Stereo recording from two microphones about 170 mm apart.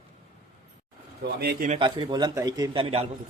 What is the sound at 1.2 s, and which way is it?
Speech, 70° right (ahead or behind).